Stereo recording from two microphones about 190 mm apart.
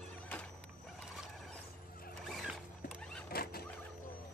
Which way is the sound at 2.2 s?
Centre (ahead or behind).